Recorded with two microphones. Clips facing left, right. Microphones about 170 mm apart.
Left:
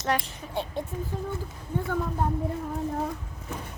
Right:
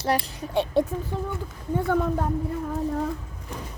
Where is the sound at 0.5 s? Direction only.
75° right (ahead or behind).